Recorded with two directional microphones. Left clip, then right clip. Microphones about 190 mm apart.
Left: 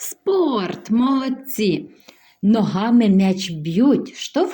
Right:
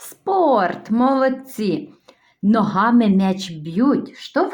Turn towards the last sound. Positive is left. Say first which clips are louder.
# even
turn(degrees=25)  # may be behind; listen again after turning